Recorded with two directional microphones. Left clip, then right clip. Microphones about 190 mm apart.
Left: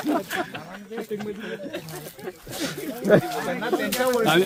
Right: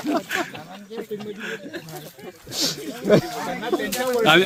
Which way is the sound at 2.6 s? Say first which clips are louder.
Right 1 dB; 55° right (ahead or behind).